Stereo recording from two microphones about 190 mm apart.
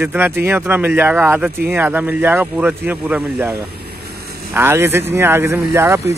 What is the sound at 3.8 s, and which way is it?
Vehicle, 55° right (ahead or behind).